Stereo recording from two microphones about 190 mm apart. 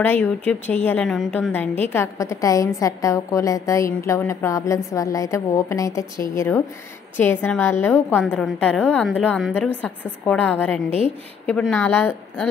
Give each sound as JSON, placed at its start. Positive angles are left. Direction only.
{"t": 0.0, "sound": "a woman's voice", "side_deg": 10}